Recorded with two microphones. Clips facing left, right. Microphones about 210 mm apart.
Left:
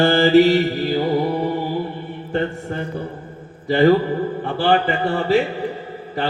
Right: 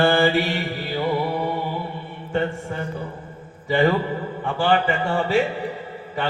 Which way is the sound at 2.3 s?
40° left (ahead or behind).